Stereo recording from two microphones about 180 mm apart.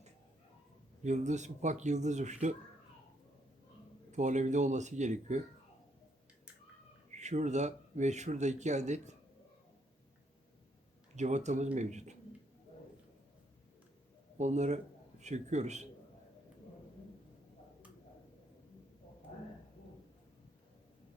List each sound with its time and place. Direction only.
1.0 s speech: 40° right (ahead or behind)
4.1 s speech: 40° right (ahead or behind)
7.1 s speech: 40° right (ahead or behind)
11.1 s speech: 40° right (ahead or behind)
14.3 s speech: 40° right (ahead or behind)